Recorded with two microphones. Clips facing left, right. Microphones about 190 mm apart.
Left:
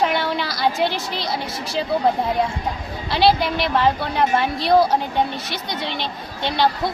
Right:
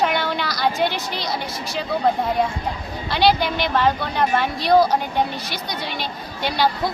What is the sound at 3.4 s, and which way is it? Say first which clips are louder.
A woman's voice: left 1 dB; centre (ahead or behind).